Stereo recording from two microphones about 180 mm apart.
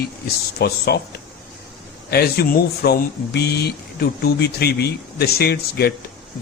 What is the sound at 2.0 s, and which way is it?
Speech, 60° left (ahead or behind).